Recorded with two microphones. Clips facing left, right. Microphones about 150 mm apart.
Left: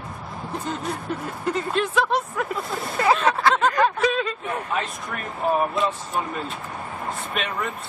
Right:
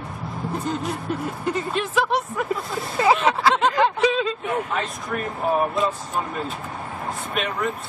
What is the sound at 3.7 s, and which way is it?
Speech, 20° right (ahead or behind).